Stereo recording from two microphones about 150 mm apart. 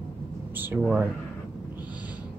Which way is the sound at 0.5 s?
15° right (ahead or behind).